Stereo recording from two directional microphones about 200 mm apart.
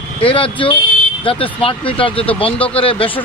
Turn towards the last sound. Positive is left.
turn(degrees=25)  # may be behind; listen again after turning